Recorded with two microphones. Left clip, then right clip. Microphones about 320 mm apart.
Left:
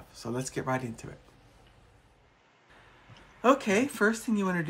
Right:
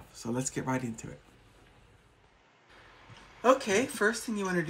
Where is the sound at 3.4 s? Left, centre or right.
Left.